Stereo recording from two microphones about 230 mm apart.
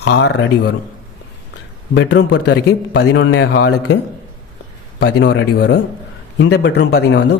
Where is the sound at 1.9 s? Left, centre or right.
Left.